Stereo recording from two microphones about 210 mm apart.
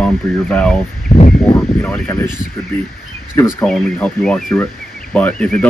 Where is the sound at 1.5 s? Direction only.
5° left (ahead or behind).